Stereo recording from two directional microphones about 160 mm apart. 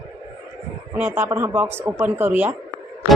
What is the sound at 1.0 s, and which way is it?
Speech, 15° right (ahead or behind).